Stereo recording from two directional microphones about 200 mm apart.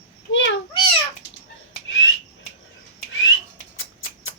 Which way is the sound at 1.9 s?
70° left (ahead or behind).